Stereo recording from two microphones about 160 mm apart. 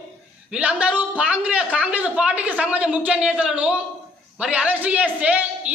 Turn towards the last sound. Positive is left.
turn(degrees=-10)  # may be behind; listen again after turning